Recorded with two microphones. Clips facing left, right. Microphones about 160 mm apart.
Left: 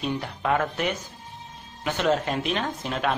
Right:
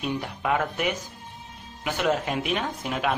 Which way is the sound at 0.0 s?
10° right (ahead or behind).